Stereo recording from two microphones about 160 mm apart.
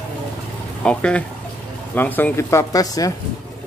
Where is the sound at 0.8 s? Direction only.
5° left (ahead or behind); by 3.2 s 20° left (ahead or behind).